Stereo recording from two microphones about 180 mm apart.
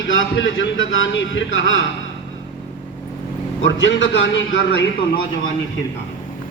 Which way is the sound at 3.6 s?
90° left.